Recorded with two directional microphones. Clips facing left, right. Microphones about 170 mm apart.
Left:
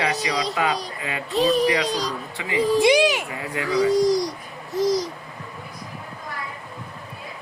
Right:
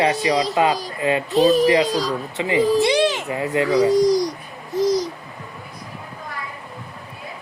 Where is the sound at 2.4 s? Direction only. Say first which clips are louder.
Right 5 dB; 25° right (ahead or behind).